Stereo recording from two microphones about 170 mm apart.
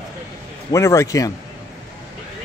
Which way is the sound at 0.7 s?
15° left (ahead or behind).